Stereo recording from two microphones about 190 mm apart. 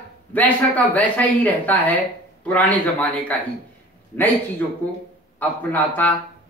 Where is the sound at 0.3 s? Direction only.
10° left (ahead or behind).